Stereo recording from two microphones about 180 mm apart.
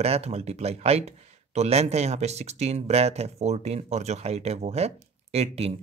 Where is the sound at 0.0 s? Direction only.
35° right (ahead or behind).